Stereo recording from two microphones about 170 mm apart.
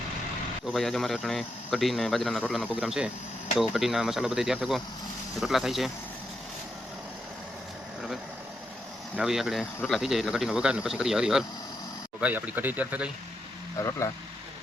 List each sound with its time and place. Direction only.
0.7 s speech: centre (ahead or behind)
9.1 s speech: 5° right (ahead or behind)
13.7 s speech: 15° left (ahead or behind)